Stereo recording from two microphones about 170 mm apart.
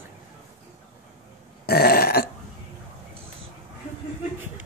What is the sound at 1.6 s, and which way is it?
Burping, 65° left (ahead or behind).